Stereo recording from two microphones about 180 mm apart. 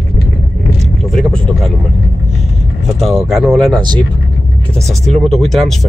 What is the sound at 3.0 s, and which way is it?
Speech, centre (ahead or behind).